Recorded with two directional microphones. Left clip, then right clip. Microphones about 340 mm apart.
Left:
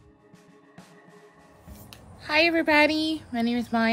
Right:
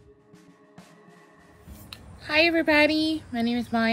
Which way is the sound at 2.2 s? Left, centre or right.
Centre.